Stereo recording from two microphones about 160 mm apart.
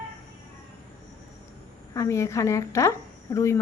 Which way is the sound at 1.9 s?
20° left (ahead or behind).